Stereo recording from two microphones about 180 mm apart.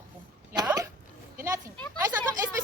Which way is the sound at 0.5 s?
20° right (ahead or behind).